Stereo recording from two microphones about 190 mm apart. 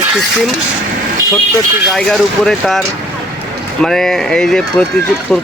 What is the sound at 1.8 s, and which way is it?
Speech, centre (ahead or behind).